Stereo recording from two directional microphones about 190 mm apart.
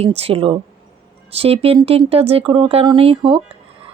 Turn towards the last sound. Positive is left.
turn(degrees=-30)  # may be behind; listen again after turning